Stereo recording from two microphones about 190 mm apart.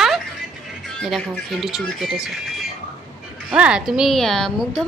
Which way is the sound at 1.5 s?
Centre (ahead or behind).